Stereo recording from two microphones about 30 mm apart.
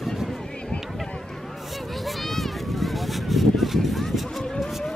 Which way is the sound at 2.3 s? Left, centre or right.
Centre.